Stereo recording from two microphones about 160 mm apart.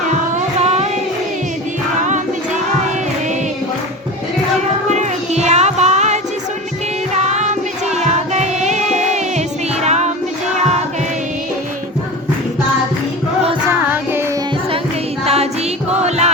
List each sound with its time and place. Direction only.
0.6 s child singing: 40° right (ahead or behind)
2.0 s music: 50° right (ahead or behind)
4.9 s music: 45° right (ahead or behind)
13.7 s music: 15° right (ahead or behind)
15.2 s music: 40° right (ahead or behind)